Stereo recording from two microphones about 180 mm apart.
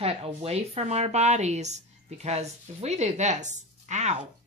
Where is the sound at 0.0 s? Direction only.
35° right (ahead or behind).